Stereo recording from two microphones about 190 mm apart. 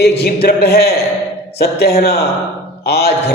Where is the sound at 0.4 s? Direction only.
55° left (ahead or behind).